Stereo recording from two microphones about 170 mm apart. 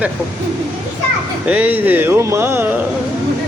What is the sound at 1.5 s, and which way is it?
Speech, 10° right (ahead or behind).